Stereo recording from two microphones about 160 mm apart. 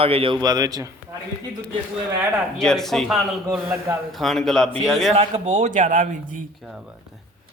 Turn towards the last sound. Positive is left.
turn(degrees=-55)  # may be behind; listen again after turning